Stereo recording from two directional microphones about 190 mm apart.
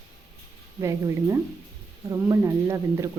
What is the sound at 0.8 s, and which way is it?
Speech, 15° right (ahead or behind).